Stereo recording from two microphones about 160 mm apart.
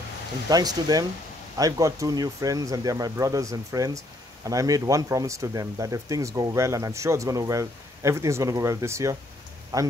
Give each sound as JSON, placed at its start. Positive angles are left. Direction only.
{"t": 0.5, "sound": "speech", "side_deg": -25}